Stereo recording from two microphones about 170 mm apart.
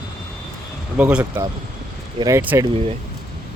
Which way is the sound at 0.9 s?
10° right (ahead or behind).